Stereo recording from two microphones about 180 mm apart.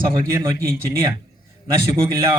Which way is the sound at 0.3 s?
15° right (ahead or behind).